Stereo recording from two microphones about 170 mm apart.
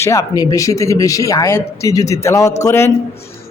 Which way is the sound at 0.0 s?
15° left (ahead or behind).